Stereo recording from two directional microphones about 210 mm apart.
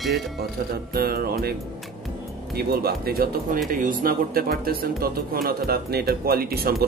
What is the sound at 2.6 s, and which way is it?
Speech, 45° right (ahead or behind).